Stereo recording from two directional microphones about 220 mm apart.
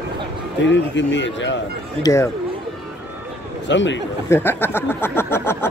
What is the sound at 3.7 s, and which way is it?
Speech, 55° left (ahead or behind).